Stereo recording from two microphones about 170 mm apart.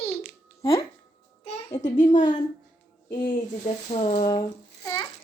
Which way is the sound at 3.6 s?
40° left (ahead or behind).